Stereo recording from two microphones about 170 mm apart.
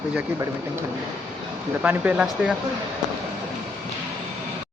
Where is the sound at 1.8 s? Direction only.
10° right (ahead or behind).